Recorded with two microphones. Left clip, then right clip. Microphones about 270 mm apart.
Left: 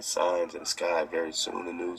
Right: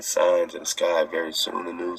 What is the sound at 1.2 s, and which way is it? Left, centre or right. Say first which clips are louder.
Speech: right 5 dB; right.